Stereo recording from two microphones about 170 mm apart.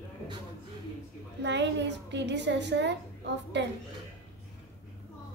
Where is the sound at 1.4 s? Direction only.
90° right.